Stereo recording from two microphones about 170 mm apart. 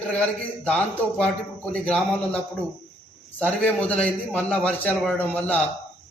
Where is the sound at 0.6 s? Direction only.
10° left (ahead or behind).